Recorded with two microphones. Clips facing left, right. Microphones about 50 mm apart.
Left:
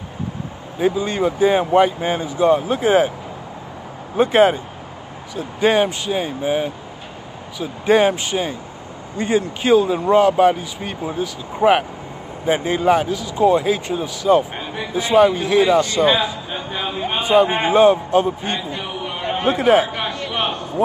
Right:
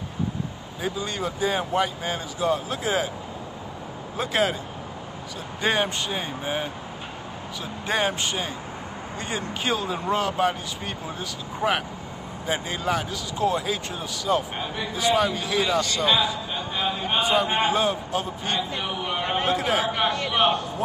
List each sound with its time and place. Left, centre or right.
0.7 s a man's voice: left
4.2 s a man's voice: left
5.3 s speech: centre
7.8 s speech: centre
12.4 s speech: left
15.0 s a man's voice: left
18.7 s a sound: centre
19.4 s a man's voice: left
20.0 s speech: centre